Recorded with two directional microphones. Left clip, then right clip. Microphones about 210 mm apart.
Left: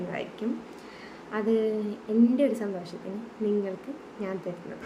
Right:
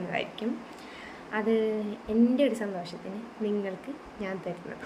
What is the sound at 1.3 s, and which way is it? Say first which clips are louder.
A woman's voice: left 1 dB; 10° left (ahead or behind).